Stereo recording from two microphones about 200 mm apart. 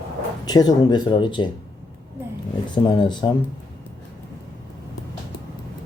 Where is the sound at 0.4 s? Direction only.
20° left (ahead or behind).